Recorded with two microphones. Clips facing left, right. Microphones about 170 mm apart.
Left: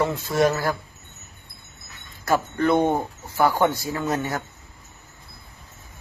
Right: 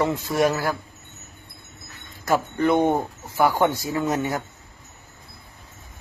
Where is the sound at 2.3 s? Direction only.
15° right (ahead or behind).